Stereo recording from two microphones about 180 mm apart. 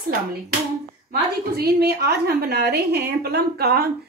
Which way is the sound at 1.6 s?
65° right (ahead or behind).